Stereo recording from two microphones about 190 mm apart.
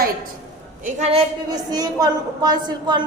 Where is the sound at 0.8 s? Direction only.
35° right (ahead or behind).